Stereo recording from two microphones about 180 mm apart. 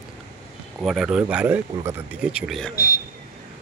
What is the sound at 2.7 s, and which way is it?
Speech, 60° left (ahead or behind).